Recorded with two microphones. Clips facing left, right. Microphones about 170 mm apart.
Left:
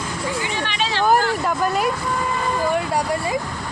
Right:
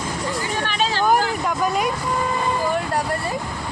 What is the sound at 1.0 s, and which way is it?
Speech, centre (ahead or behind).